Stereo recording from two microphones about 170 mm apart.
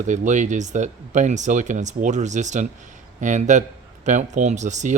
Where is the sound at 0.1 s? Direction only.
45° right (ahead or behind).